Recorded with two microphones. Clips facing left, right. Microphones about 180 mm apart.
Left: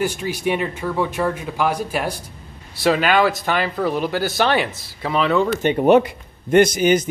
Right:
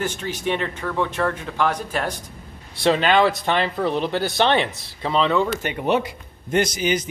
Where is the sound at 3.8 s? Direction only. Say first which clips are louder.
Left 1 dB; 5° left (ahead or behind).